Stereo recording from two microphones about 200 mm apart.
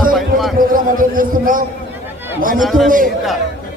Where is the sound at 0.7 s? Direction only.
45° right (ahead or behind).